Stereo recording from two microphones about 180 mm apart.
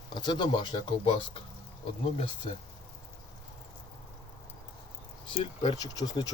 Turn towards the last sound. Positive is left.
turn(degrees=20)  # may be behind; listen again after turning